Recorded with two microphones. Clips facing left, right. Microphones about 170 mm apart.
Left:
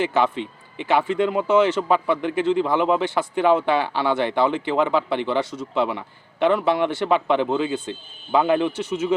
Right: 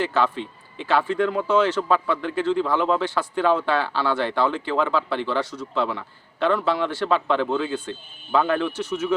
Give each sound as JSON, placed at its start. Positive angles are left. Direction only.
{"t": 0.0, "sound": "speech", "side_deg": 20}